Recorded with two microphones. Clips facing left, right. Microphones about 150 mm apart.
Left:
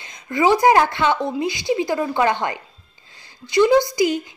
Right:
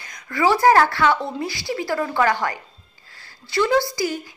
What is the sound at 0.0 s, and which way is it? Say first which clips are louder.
A woman's voice: left 2 dB; 20° left (ahead or behind).